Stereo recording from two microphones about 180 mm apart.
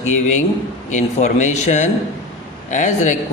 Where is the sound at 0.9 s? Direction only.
40° left (ahead or behind).